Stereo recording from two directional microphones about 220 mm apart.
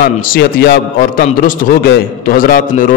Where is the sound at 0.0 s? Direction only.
45° left (ahead or behind).